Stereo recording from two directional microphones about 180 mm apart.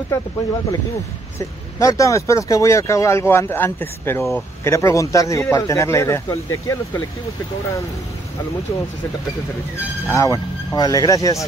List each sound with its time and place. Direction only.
1.8 s speech: 15° left (ahead or behind)
10.0 s speech: 15° left (ahead or behind)